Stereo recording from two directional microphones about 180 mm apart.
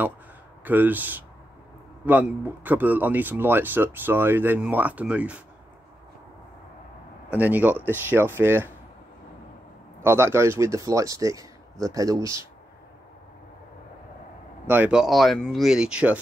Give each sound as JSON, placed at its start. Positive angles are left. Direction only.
{"t": 0.7, "sound": "speech", "side_deg": -10}
{"t": 7.2, "sound": "speech", "side_deg": -10}
{"t": 10.0, "sound": "speech", "side_deg": -15}
{"t": 14.7, "sound": "speech", "side_deg": -10}